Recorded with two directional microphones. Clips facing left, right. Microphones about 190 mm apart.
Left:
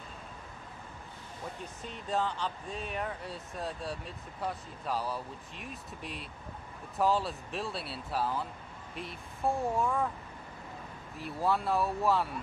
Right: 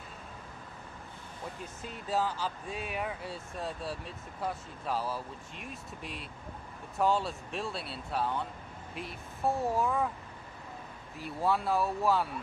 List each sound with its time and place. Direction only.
1.9 s speech: 5° right (ahead or behind)
11.1 s speech: centre (ahead or behind)